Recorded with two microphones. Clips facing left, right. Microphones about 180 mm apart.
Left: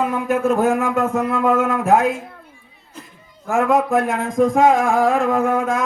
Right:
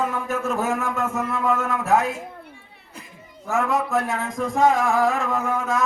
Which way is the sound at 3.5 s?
50° left (ahead or behind).